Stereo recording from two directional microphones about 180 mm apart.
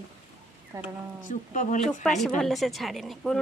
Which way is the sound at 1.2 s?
45° left (ahead or behind).